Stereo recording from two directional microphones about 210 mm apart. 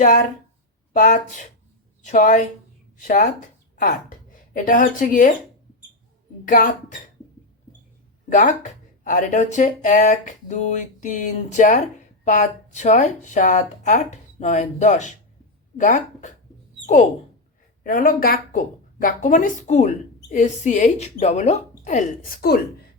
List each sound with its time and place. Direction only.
0.0 s speech: 40° left (ahead or behind)
4.5 s speech: 40° left (ahead or behind)
6.4 s speech: 40° left (ahead or behind)
8.3 s speech: 40° left (ahead or behind)